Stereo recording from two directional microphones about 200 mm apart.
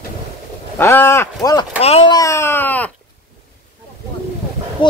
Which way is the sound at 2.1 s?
15° left (ahead or behind).